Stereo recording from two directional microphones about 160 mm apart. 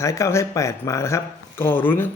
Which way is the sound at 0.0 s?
20° left (ahead or behind).